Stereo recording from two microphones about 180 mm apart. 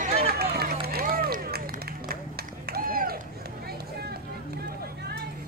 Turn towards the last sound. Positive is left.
turn(degrees=-60)  # may be behind; listen again after turning